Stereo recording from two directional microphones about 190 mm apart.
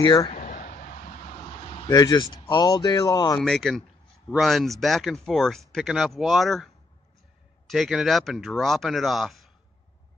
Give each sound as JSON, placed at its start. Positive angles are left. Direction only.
{"t": 0.0, "sound": "speech", "side_deg": 25}
{"t": 0.3, "sound": "a sound", "side_deg": 45}
{"t": 1.7, "sound": "speech", "side_deg": 25}
{"t": 3.3, "sound": "speech", "side_deg": 5}